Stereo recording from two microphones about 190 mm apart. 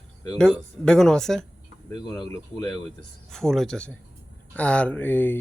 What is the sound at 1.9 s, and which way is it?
Speech, 20° left (ahead or behind).